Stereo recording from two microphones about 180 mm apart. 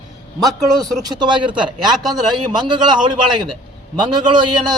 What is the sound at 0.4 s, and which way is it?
Speech, 20° right (ahead or behind).